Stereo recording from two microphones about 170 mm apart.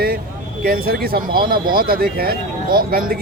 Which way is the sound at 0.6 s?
60° right (ahead or behind).